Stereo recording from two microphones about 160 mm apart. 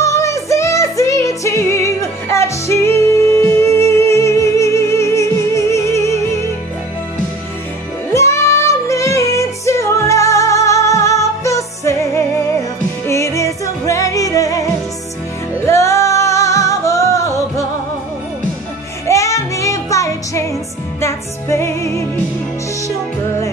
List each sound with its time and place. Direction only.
0.0 s music: 20° left (ahead or behind)
8.1 s music: 20° left (ahead or behind)
19.0 s music: 20° left (ahead or behind)